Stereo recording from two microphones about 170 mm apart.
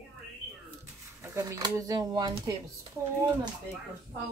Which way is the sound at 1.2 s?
20° right (ahead or behind).